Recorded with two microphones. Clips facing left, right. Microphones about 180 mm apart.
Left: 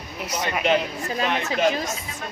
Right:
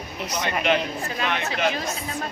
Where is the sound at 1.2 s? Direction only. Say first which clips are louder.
Left 4 dB; 40° left (ahead or behind).